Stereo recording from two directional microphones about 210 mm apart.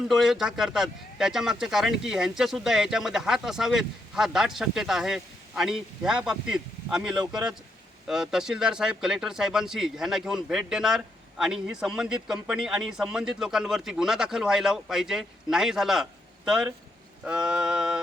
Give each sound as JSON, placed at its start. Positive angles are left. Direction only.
{"t": 0.1, "sound": "speech", "side_deg": 0}